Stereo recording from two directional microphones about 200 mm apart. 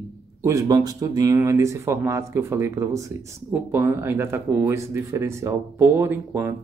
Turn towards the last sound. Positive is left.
turn(degrees=-10)  # may be behind; listen again after turning